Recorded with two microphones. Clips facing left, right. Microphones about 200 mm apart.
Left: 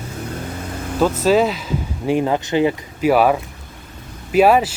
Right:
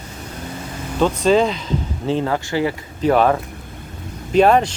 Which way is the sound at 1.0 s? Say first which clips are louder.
Even; 5° left (ahead or behind).